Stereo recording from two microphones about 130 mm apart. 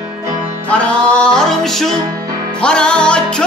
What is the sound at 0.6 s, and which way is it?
Music, 10° left (ahead or behind).